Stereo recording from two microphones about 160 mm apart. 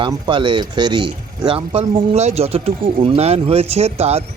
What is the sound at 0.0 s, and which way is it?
Speech, 30° right (ahead or behind).